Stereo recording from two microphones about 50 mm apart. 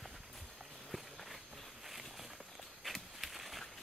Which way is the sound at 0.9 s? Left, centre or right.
Centre.